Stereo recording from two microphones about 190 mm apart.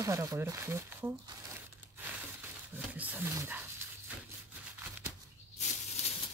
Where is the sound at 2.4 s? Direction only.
10° right (ahead or behind).